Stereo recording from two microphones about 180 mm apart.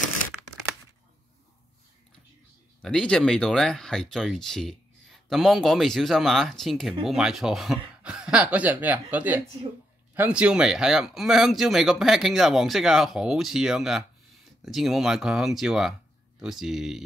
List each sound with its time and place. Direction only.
2.8 s speech: 5° left (ahead or behind)